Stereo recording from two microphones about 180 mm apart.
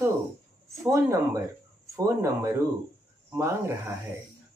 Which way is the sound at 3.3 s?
15° right (ahead or behind).